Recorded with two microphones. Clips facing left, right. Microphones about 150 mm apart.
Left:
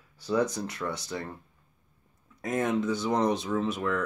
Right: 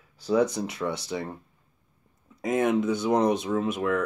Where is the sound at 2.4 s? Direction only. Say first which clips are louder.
Right 4 dB; 15° right (ahead or behind).